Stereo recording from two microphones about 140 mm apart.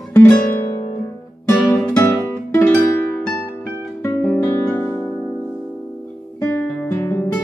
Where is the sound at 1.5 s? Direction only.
15° left (ahead or behind).